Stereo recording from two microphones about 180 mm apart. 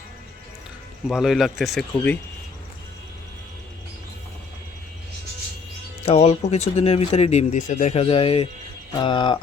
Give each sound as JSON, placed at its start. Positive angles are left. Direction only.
{"t": 1.0, "sound": "speech", "side_deg": 0}
{"t": 6.1, "sound": "speech", "side_deg": 35}